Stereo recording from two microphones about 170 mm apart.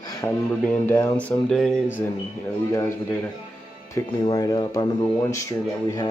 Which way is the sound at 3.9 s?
20° left (ahead or behind).